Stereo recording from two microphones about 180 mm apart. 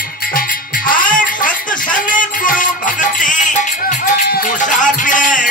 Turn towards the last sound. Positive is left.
turn(degrees=45)  # may be behind; listen again after turning